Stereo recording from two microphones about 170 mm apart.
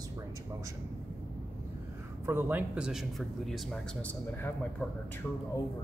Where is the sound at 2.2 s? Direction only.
10° right (ahead or behind); by 4.8 s 10° left (ahead or behind).